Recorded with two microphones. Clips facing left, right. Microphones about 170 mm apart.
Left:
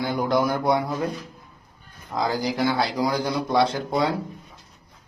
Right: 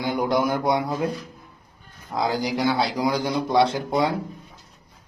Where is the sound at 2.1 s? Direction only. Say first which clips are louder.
Even; 20° right (ahead or behind).